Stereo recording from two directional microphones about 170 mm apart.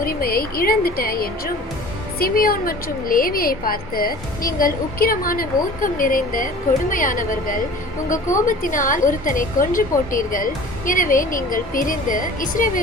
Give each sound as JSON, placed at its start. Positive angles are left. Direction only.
{"t": 0.0, "sound": "a woman's voice", "side_deg": 60}